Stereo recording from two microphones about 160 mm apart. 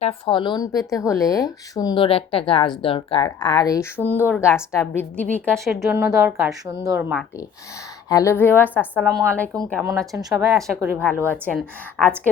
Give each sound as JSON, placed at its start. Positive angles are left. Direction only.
{"t": 0.0, "sound": "speech", "side_deg": 35}
{"t": 3.2, "sound": "a woman's voice", "side_deg": 25}
{"t": 6.1, "sound": "a woman's voice", "side_deg": -10}
{"t": 8.1, "sound": "a woman's voice", "side_deg": 20}
{"t": 9.8, "sound": "speech", "side_deg": -25}
{"t": 11.3, "sound": "a woman's voice", "side_deg": 5}